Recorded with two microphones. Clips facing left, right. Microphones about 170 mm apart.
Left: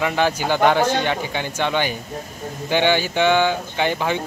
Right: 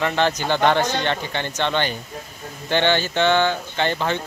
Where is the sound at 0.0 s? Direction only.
10° left (ahead or behind).